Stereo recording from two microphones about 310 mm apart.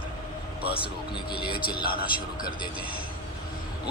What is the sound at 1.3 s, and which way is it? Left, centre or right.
Speech, left.